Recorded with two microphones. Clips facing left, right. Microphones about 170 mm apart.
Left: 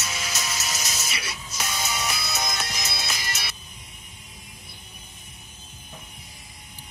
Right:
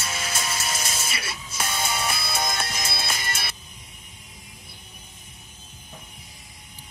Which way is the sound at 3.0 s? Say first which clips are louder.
Right 2 dB; 55° right (ahead or behind).